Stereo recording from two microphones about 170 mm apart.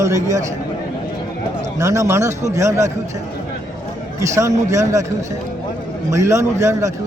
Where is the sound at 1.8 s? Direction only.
20° right (ahead or behind).